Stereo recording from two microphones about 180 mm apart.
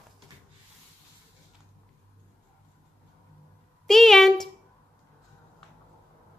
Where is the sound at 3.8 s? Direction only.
Centre (ahead or behind).